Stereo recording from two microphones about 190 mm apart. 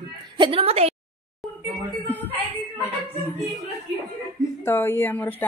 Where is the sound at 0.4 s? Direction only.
30° right (ahead or behind).